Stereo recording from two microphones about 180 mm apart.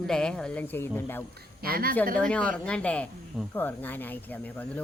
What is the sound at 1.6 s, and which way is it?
Speech, 55° right (ahead or behind).